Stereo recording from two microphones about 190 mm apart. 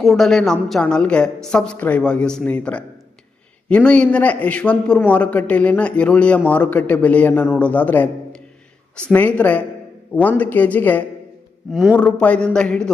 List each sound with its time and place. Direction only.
0.0 s a man's voice: centre (ahead or behind)